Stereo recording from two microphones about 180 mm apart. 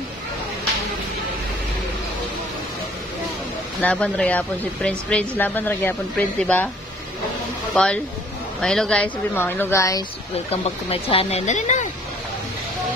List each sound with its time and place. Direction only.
3.8 s a woman's voice: 5° left (ahead or behind)
7.7 s a woman's voice: 5° left (ahead or behind)
10.5 s speech: 30° left (ahead or behind)